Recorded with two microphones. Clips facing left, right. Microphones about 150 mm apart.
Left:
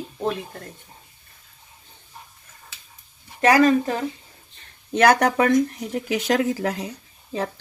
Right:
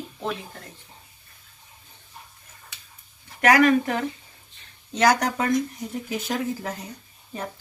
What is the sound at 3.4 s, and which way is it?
Speech, 30° left (ahead or behind).